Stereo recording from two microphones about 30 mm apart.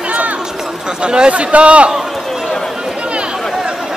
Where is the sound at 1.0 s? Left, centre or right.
Right.